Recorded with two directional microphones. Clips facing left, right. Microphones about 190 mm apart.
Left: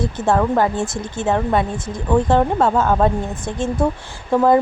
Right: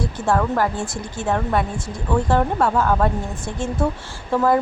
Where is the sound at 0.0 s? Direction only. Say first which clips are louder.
Left 3 dB; 20° left (ahead or behind).